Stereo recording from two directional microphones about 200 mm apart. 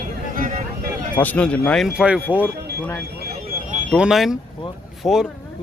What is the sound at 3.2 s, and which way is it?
Alarm, 50° right (ahead or behind).